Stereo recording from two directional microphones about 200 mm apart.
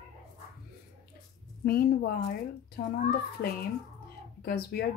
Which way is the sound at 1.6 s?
50° left (ahead or behind).